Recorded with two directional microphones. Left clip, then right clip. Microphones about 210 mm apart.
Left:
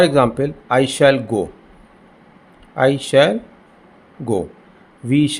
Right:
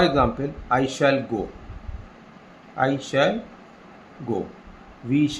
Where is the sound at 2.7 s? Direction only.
55° left (ahead or behind).